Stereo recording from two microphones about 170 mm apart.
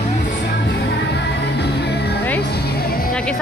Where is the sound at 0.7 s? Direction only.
90° left.